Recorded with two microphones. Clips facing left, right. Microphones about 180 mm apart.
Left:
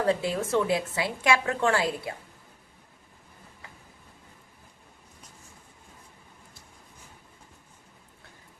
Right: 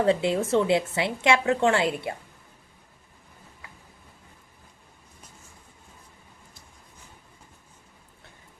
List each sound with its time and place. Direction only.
0.0 s a woman's voice: 25° right (ahead or behind)